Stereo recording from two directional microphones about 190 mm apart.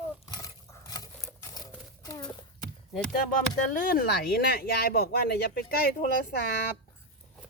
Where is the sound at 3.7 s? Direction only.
50° left (ahead or behind).